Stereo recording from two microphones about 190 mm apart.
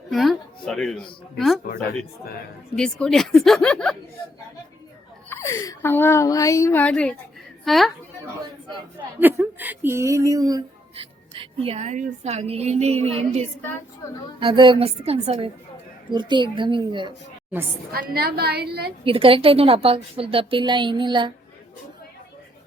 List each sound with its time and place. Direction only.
0.1 s a sound: centre (ahead or behind)
1.4 s a woman's voice: centre (ahead or behind)
2.7 s a woman's voice: 5° left (ahead or behind)
5.3 s a woman's voice: 15° left (ahead or behind)
9.2 s a woman's voice: 10° right (ahead or behind)
10.9 s a woman's voice: 30° right (ahead or behind)
17.9 s a woman's voice: 55° right (ahead or behind)
19.0 s a woman's voice: 30° right (ahead or behind)